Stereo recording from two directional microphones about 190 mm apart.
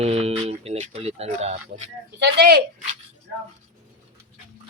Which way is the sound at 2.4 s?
55° right (ahead or behind).